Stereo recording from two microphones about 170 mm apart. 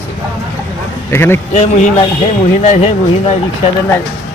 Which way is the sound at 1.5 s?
45° left (ahead or behind).